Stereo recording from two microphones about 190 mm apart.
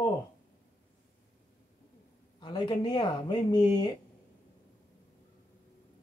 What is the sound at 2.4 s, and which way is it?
Speech, 25° left (ahead or behind).